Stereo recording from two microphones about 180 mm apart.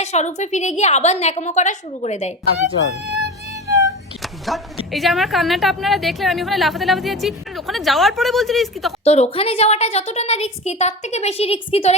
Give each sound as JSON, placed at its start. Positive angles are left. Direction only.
{"t": 0.0, "sound": "a woman's voice", "side_deg": 40}
{"t": 3.7, "sound": "vehicle", "side_deg": -20}
{"t": 4.2, "sound": "a sound", "side_deg": 0}
{"t": 4.9, "sound": "a woman's voice", "side_deg": 0}
{"t": 9.0, "sound": "a woman's voice", "side_deg": 35}